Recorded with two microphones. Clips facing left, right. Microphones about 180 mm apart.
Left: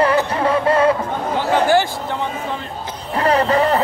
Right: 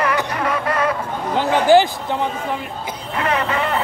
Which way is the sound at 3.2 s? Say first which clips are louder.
Left 5 dB; 35° left (ahead or behind).